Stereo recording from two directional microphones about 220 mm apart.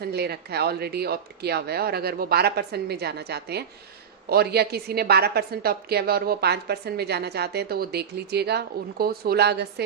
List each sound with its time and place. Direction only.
0.0 s a woman's voice: 45° right (ahead or behind)